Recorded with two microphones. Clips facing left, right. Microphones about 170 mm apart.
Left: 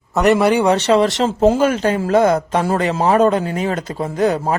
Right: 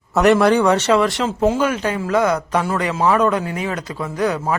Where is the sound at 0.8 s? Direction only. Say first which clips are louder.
Left 2 dB; 35° left (ahead or behind).